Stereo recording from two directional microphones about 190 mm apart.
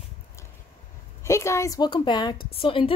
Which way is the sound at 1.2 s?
15° left (ahead or behind).